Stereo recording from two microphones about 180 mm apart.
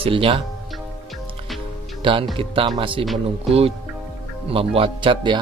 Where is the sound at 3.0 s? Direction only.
Centre (ahead or behind).